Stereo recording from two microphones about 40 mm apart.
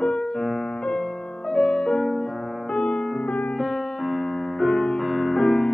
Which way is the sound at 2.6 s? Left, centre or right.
Left.